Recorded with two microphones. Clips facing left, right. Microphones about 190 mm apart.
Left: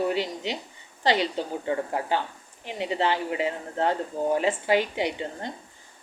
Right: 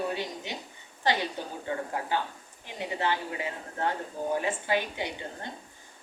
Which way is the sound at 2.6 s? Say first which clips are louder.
Left 5 dB; 20° left (ahead or behind).